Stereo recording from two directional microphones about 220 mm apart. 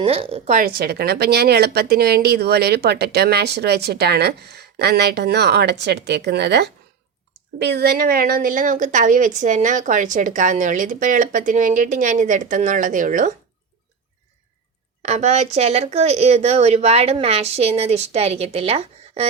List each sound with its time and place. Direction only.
0.0 s a woman's voice: 25° right (ahead or behind)
15.0 s speech: 30° right (ahead or behind)